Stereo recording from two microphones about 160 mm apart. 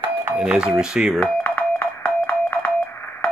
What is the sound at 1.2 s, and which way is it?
Music, 10° left (ahead or behind).